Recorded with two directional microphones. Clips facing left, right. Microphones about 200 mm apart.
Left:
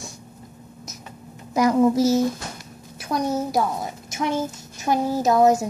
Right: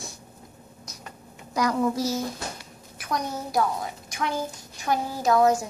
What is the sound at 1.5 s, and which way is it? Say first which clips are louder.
Speech: left 7 dB; 20° left (ahead or behind).